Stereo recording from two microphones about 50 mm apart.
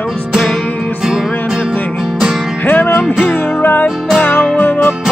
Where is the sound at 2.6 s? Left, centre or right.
Left.